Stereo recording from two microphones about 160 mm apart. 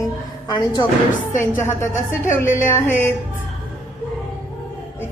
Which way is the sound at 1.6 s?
15° left (ahead or behind).